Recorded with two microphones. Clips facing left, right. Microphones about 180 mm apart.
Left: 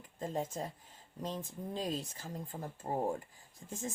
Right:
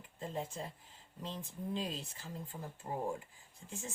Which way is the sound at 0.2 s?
45° left (ahead or behind).